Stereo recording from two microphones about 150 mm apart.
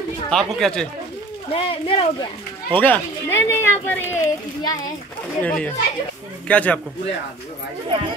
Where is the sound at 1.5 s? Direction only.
35° left (ahead or behind).